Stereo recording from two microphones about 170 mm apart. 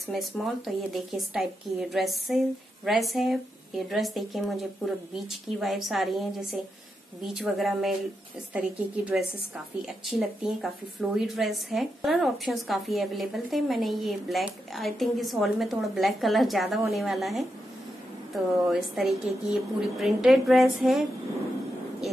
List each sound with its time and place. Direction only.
0.1 s a woman's voice: centre (ahead or behind)